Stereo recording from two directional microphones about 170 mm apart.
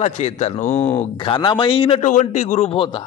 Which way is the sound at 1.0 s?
30° left (ahead or behind).